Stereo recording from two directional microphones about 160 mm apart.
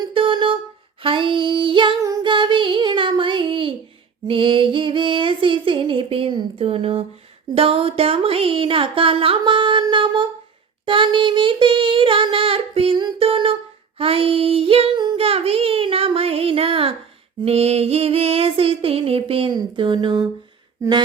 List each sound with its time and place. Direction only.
0.1 s a sound: 35° right (ahead or behind)
1.0 s female singing: 30° right (ahead or behind)
4.3 s a sound: 35° right (ahead or behind)
7.5 s female singing: 35° right (ahead or behind)
10.8 s child singing: 30° right (ahead or behind)
17.4 s female singing: 40° right (ahead or behind)